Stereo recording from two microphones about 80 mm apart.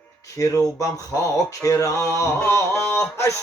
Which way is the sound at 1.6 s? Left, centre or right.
Left.